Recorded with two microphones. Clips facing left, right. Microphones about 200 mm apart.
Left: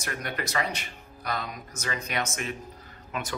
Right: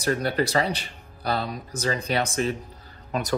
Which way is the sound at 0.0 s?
35° right (ahead or behind).